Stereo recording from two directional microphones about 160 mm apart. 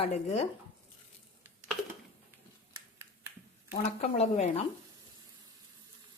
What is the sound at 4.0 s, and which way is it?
Speech, 45° left (ahead or behind).